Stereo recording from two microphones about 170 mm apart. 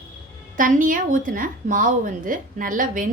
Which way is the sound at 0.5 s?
50° right (ahead or behind).